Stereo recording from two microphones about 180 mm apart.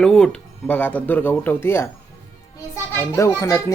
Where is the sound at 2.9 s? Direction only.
15° left (ahead or behind).